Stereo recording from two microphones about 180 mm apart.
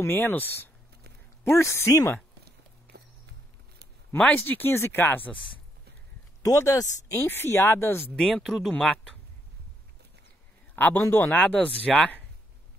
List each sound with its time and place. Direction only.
0.0 s speech: 10° left (ahead or behind)
2.4 s horse: 65° right (ahead or behind)
4.1 s speech: 10° left (ahead or behind)
6.4 s speech: 15° left (ahead or behind)
10.8 s speech: 10° left (ahead or behind)